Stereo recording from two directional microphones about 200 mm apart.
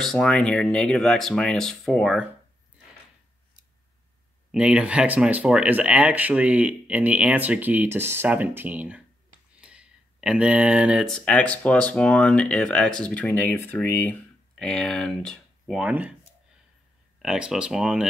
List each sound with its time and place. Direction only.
0.0 s speech: centre (ahead or behind)
4.5 s speech: 5° right (ahead or behind)
17.2 s speech: centre (ahead or behind)